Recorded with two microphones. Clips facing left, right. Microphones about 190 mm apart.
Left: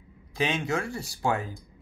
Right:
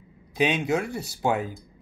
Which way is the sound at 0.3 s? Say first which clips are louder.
Right 4 dB; 15° right (ahead or behind).